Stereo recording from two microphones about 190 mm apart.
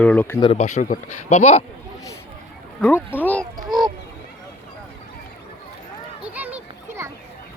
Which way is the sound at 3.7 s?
20° right (ahead or behind).